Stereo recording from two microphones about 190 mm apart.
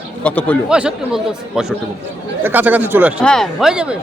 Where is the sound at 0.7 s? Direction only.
5° right (ahead or behind).